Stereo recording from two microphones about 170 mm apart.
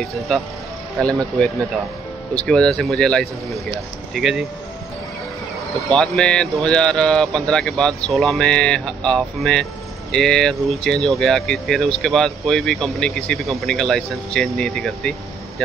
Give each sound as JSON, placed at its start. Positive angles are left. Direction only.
{"t": 0.9, "sound": "speech", "side_deg": 5}
{"t": 5.9, "sound": "speech", "side_deg": 5}